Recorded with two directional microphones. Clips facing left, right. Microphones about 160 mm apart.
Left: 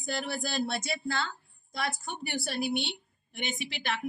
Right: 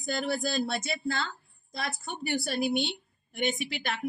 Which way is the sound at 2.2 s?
45° right (ahead or behind).